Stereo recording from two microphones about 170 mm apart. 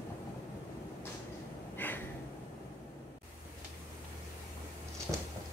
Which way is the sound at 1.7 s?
10° left (ahead or behind).